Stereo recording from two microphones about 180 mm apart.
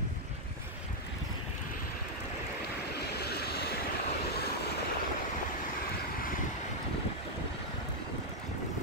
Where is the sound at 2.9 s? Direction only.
65° left (ahead or behind).